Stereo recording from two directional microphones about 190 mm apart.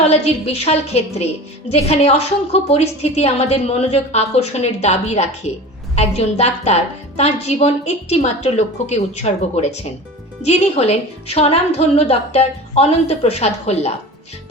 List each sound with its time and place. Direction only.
0.1 s a woman's voice: 30° left (ahead or behind)